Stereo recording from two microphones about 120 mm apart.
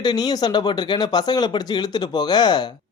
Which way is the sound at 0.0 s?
35° left (ahead or behind).